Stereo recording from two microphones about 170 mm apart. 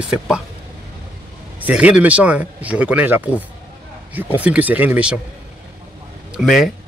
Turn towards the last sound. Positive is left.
turn(degrees=0)  # may be behind; listen again after turning